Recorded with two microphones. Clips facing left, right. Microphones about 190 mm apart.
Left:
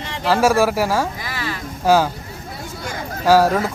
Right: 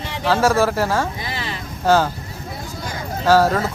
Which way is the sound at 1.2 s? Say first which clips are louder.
Left 1 dB; 25° right (ahead or behind).